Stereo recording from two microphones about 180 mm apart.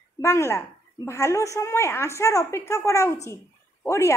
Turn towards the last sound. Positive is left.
turn(degrees=15)  # may be behind; listen again after turning